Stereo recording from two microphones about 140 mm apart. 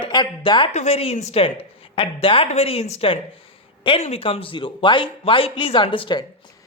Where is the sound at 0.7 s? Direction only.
50° left (ahead or behind).